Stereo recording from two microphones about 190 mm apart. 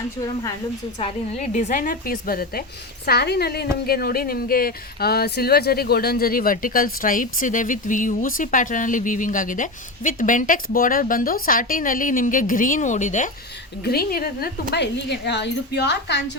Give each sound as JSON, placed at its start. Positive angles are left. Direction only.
{"t": 0.9, "sound": "speech", "side_deg": 40}
{"t": 13.8, "sound": "a woman's voice", "side_deg": 55}